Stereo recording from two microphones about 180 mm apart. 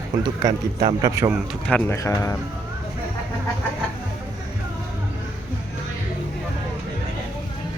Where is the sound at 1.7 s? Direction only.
10° left (ahead or behind).